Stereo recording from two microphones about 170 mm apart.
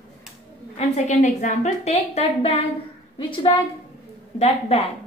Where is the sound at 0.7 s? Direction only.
40° left (ahead or behind).